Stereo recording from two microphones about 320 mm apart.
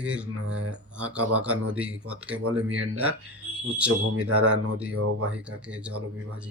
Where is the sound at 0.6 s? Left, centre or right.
Right.